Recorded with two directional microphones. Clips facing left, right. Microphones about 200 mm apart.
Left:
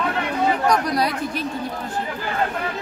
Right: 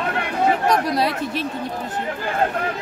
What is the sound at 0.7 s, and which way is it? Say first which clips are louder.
Speech: right 1 dB; 25° right (ahead or behind).